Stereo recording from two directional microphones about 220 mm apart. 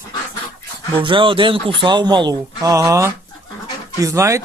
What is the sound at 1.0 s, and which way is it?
Speech, 25° right (ahead or behind).